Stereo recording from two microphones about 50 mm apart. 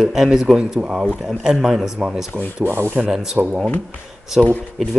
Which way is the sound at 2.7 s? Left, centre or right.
Right.